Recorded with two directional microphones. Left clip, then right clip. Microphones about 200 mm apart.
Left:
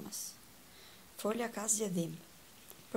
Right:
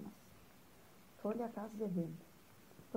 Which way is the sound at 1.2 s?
25° left (ahead or behind).